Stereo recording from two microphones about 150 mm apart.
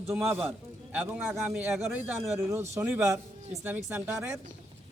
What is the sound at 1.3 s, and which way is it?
Speech, centre (ahead or behind).